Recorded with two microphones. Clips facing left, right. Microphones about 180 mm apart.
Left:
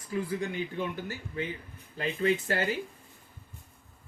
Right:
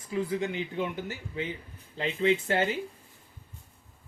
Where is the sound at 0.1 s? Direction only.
20° right (ahead or behind).